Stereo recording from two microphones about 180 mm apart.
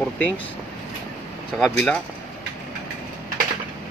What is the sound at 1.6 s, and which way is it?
Speech, 5° left (ahead or behind).